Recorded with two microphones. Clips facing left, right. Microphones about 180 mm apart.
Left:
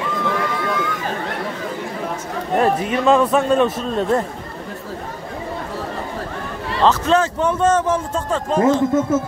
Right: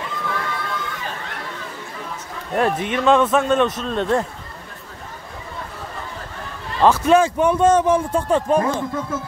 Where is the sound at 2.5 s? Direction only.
Centre (ahead or behind).